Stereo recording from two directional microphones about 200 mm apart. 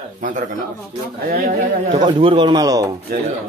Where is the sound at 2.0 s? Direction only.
25° right (ahead or behind).